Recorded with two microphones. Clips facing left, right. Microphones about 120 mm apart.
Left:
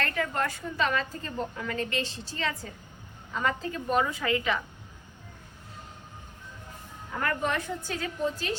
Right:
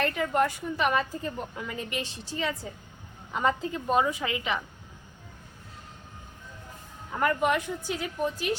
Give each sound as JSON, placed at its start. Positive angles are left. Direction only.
{"t": 0.0, "sound": "a woman's voice", "side_deg": -20}
{"t": 7.2, "sound": "a woman's voice", "side_deg": -15}